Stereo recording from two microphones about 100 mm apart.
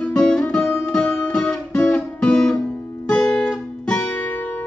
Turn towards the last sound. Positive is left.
turn(degrees=15)  # may be behind; listen again after turning